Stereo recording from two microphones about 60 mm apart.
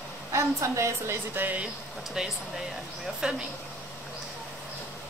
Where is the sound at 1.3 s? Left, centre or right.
Right.